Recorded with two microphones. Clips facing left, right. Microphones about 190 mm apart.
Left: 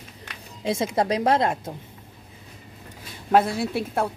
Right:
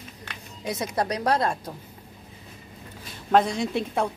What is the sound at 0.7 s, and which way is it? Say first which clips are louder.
Speech: left 4 dB; 25° left (ahead or behind).